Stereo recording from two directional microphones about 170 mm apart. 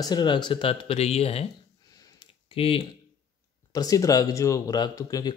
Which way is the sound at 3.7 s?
20° left (ahead or behind).